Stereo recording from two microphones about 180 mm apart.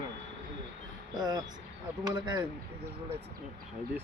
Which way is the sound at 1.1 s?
20° right (ahead or behind).